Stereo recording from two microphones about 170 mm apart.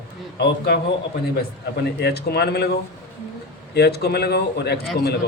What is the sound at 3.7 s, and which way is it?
A man's voice, 75° left (ahead or behind).